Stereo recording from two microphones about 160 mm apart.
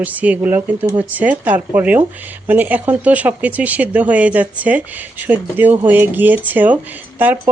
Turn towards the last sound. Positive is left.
turn(degrees=-10)  # may be behind; listen again after turning